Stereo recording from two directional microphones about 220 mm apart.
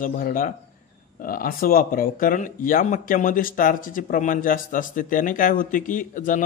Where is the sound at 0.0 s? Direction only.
40° left (ahead or behind).